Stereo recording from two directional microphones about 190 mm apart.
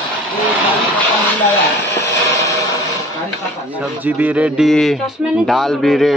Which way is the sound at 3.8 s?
10° right (ahead or behind).